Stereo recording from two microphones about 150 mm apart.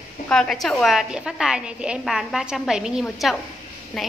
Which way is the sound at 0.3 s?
Centre (ahead or behind).